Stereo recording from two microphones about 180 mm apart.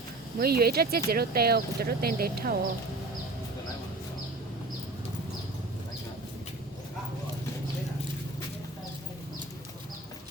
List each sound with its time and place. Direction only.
0.3 s speech: 60° right (ahead or behind)